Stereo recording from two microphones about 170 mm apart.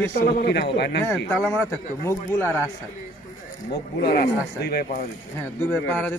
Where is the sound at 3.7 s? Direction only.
65° left (ahead or behind).